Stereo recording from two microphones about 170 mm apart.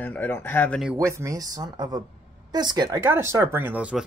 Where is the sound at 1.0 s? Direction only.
15° right (ahead or behind).